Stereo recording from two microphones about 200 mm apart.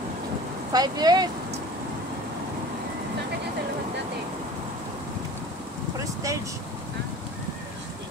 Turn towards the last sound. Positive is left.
turn(degrees=-15)  # may be behind; listen again after turning